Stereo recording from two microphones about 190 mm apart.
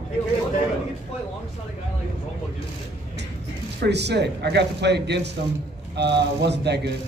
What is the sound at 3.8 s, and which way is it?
A man's voice, 60° right (ahead or behind).